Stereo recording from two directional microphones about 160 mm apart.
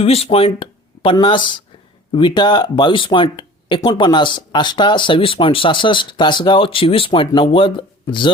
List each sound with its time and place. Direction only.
0.0 s speech: 40° left (ahead or behind)